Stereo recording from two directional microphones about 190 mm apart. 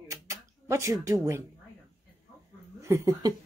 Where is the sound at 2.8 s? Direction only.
15° right (ahead or behind).